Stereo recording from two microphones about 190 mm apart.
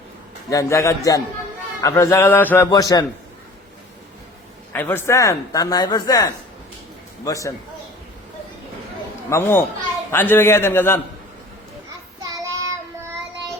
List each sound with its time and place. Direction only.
0.5 s a man's voice: 15° left (ahead or behind)
4.7 s speech: 10° left (ahead or behind)
9.3 s speech: 10° left (ahead or behind)
12.2 s child singing: 20° right (ahead or behind)